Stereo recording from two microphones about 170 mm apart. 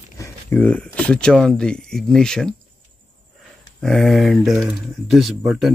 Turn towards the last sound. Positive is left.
turn(degrees=0)  # may be behind; listen again after turning